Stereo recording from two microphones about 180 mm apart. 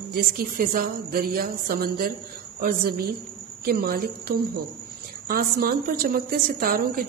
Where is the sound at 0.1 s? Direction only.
55° right (ahead or behind).